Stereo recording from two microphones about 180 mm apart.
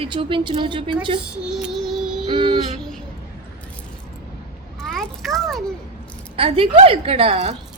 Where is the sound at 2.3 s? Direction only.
25° right (ahead or behind).